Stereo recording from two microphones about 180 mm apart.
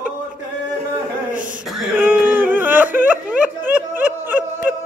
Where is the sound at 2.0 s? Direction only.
10° right (ahead or behind).